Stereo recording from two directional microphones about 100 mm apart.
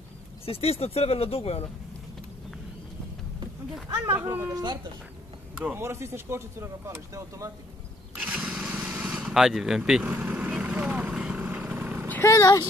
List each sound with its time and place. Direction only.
0.5 s speech: 90° left
4.0 s speech: 25° right (ahead or behind)
5.8 s speech: 25° right (ahead or behind)
8.2 s lawn mower: 15° right (ahead or behind)
8.6 s light engine: 15° right (ahead or behind)
9.0 s speech: 5° right (ahead or behind)
10.0 s vehicle: 15° right (ahead or behind)
12.1 s speech: 30° left (ahead or behind)